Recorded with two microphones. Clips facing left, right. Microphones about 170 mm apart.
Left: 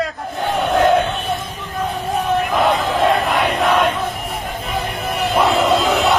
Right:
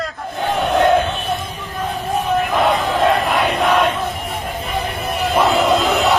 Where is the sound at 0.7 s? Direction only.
Centre (ahead or behind).